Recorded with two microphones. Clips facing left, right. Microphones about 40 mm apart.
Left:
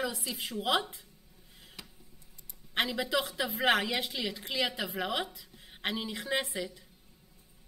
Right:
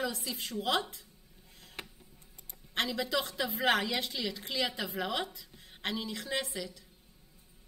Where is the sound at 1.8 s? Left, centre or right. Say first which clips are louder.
Right 5 dB; right.